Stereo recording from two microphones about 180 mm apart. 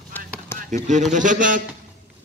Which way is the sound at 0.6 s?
40° right (ahead or behind).